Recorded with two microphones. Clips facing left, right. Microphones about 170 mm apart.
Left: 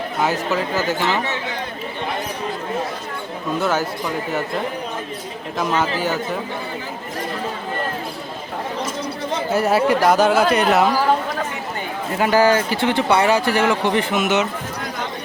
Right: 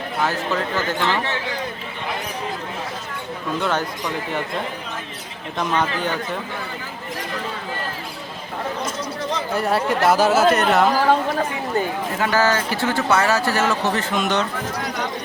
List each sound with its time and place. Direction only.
0.2 s speech: 15° left (ahead or behind)
0.8 s speech: 5° left (ahead or behind)
3.6 s speech: 5° left (ahead or behind)
5.5 s speech: 5° left (ahead or behind)
9.5 s speech: 5° left (ahead or behind)
12.2 s speech: 15° left (ahead or behind)